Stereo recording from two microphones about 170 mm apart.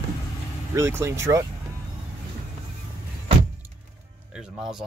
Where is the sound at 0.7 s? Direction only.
15° right (ahead or behind).